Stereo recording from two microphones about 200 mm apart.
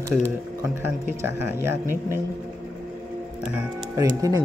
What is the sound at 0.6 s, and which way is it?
A man's voice, 10° right (ahead or behind).